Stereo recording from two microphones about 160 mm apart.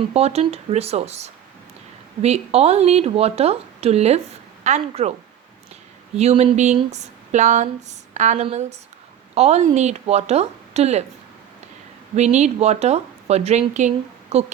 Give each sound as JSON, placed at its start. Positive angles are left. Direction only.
{"t": 0.0, "sound": "speech", "side_deg": -40}
{"t": 6.1, "sound": "speech", "side_deg": -40}
{"t": 12.1, "sound": "speech", "side_deg": -45}